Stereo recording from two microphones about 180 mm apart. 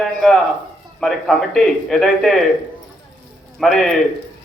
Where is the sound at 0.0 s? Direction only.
Centre (ahead or behind).